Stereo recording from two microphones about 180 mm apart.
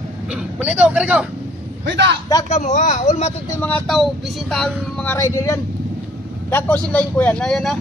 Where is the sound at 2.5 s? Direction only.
40° left (ahead or behind).